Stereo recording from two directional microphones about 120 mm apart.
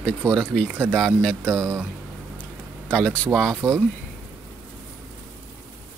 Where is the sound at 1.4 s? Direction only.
25° right (ahead or behind).